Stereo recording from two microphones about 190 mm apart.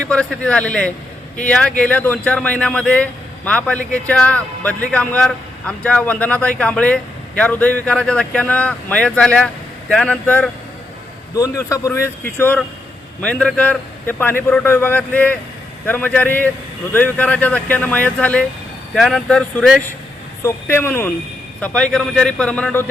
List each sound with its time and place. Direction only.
0.0 s a man's voice: 5° left (ahead or behind)
20.4 s a man's voice: 15° left (ahead or behind)